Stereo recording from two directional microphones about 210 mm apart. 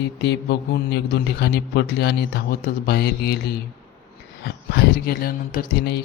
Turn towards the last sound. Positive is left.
turn(degrees=50)  # may be behind; listen again after turning